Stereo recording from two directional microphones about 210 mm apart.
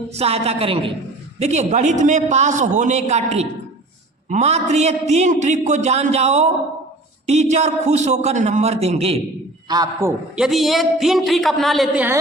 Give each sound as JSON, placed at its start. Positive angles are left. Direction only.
{"t": 0.1, "sound": "a woman's voice", "side_deg": -30}
{"t": 9.6, "sound": "a man's voice", "side_deg": -15}
{"t": 10.3, "sound": "a woman's voice", "side_deg": 0}